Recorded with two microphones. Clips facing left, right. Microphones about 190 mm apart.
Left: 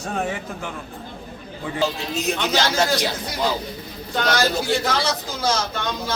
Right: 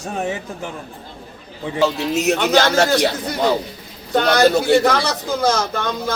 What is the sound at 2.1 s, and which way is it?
Speech, 75° right (ahead or behind).